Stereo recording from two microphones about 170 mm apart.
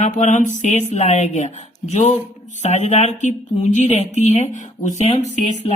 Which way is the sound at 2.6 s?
40° left (ahead or behind).